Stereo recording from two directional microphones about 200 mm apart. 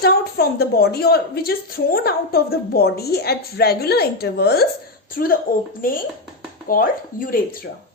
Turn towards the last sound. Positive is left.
turn(degrees=45)  # may be behind; listen again after turning